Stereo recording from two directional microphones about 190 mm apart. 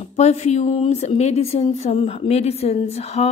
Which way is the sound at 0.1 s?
35° left (ahead or behind).